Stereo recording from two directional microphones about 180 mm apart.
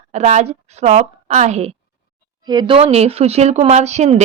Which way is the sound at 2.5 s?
25° right (ahead or behind).